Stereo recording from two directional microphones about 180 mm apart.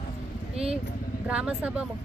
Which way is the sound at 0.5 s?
35° right (ahead or behind).